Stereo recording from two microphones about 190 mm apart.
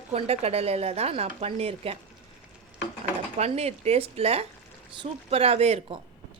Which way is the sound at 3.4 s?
35° right (ahead or behind).